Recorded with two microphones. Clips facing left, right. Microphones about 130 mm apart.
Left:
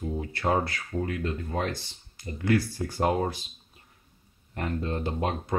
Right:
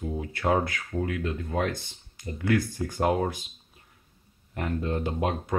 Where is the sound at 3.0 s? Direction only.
Centre (ahead or behind).